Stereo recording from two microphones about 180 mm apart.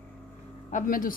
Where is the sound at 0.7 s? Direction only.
50° left (ahead or behind).